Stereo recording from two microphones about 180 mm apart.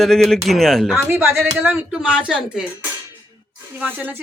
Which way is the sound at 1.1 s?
15° right (ahead or behind).